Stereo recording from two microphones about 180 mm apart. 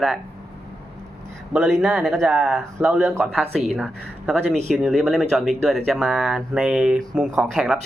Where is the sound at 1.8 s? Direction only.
5° right (ahead or behind).